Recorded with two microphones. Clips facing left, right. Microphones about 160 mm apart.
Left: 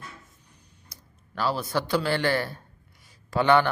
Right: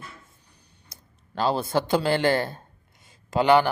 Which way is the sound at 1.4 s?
25° right (ahead or behind).